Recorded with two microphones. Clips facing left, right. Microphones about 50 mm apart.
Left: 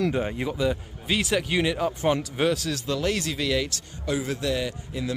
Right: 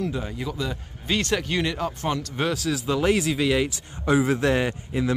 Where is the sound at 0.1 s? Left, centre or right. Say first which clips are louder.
Left 3 dB; left.